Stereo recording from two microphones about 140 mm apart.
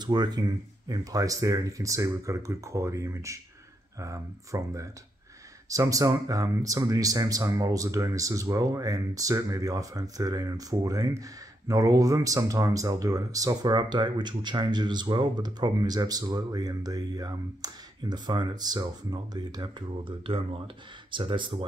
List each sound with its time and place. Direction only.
0.0 s speech: 30° right (ahead or behind)